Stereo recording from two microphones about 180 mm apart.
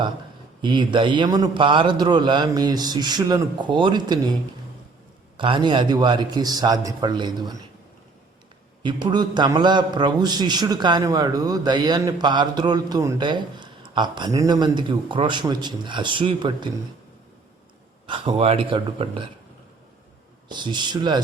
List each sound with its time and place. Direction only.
0.6 s a man's voice: 25° right (ahead or behind)
5.4 s a man's voice: 25° right (ahead or behind)
8.8 s a man's voice: 25° right (ahead or behind)
18.0 s a man's voice: 30° right (ahead or behind)
20.5 s a man's voice: 25° right (ahead or behind)